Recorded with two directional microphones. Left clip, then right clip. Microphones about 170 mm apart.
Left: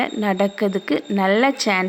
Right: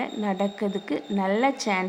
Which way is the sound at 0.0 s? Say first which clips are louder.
Left 7 dB; 25° left (ahead or behind).